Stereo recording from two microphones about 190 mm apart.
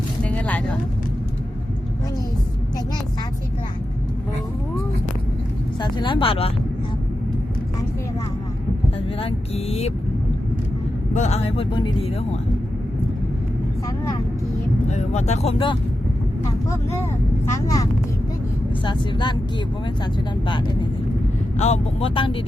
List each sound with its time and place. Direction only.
0.3 s vehicle: 5° left (ahead or behind)
5.8 s speech: 25° left (ahead or behind)
9.2 s speech: 30° left (ahead or behind)
11.1 s speech: 35° left (ahead or behind)
14.8 s speech: 35° left (ahead or behind)
17.5 s speech: 20° left (ahead or behind)
18.9 s speech: 25° left (ahead or behind)
21.6 s speech: 30° left (ahead or behind)